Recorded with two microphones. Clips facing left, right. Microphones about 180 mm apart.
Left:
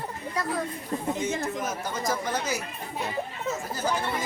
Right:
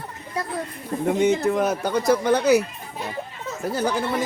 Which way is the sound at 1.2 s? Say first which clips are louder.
Right 10 dB; 65° right (ahead or behind).